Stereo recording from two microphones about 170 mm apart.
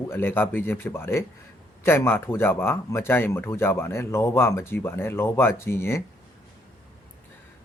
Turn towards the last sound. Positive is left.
turn(degrees=15)  # may be behind; listen again after turning